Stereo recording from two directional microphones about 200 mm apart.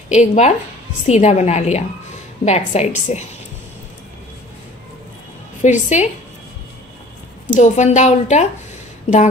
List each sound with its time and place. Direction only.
0.1 s a woman's voice: 35° left (ahead or behind)
5.6 s a woman's voice: 35° left (ahead or behind)
7.5 s a woman's voice: 35° left (ahead or behind)